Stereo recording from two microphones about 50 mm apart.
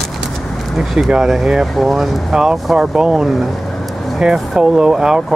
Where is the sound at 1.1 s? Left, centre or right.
Centre.